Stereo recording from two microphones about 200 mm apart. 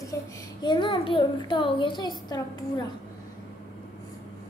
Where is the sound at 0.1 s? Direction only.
15° left (ahead or behind).